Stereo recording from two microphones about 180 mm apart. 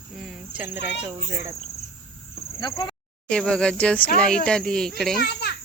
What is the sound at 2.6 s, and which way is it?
Speech, 25° left (ahead or behind).